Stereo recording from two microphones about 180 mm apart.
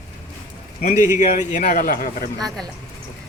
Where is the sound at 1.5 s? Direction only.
45° left (ahead or behind).